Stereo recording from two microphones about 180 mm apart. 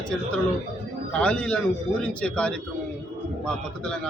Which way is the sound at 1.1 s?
5° left (ahead or behind).